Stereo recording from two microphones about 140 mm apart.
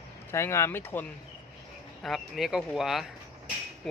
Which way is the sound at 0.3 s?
20° left (ahead or behind).